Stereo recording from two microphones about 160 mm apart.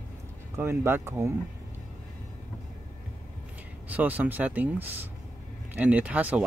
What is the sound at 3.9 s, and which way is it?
Speech, 10° right (ahead or behind).